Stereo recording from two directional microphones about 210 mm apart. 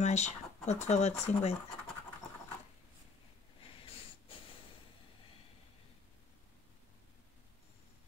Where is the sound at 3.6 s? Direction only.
25° left (ahead or behind).